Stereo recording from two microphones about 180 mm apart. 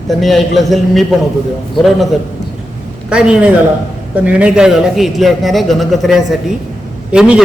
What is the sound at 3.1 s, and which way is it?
A man's voice, 5° right (ahead or behind).